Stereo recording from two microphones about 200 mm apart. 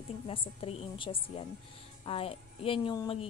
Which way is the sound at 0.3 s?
25° left (ahead or behind).